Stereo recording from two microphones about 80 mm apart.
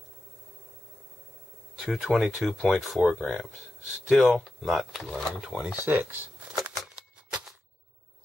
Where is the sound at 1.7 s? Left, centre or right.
Centre.